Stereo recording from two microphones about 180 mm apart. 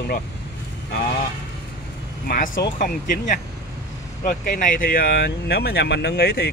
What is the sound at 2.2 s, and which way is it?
Speech, 50° left (ahead or behind).